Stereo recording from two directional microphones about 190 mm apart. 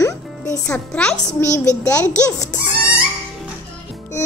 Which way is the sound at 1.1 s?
40° left (ahead or behind).